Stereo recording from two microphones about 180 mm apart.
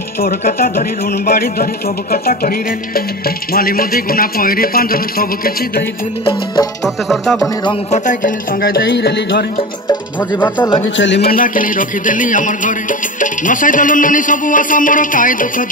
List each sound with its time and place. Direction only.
0.2 s speech: 55° left (ahead or behind)
3.3 s speech: 55° left (ahead or behind)
6.2 s music: 25° left (ahead or behind)
7.1 s music: centre (ahead or behind)
7.9 s speech: 45° left (ahead or behind); by 9.4 s 70° left (ahead or behind)
11.0 s speech: 75° left (ahead or behind); by 15.3 s 50° left (ahead or behind)